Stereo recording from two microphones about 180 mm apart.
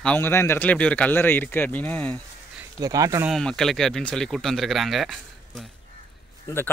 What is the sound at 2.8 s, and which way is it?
Speech, 20° right (ahead or behind).